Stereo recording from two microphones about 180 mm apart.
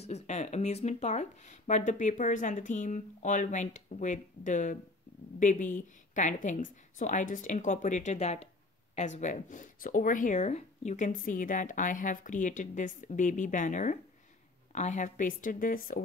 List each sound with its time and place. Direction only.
0.0 s speech: 35° left (ahead or behind)